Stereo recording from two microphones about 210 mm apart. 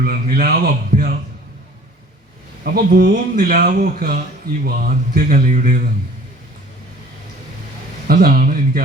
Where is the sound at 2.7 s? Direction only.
45° right (ahead or behind).